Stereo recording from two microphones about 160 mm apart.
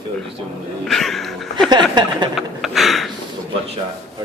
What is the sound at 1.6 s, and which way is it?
Speech, 25° right (ahead or behind).